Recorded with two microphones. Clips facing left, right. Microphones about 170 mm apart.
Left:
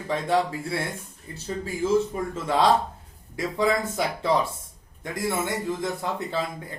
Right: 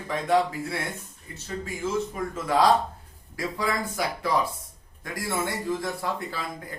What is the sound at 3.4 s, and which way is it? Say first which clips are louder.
A man's voice: left 5 dB; 25° left (ahead or behind).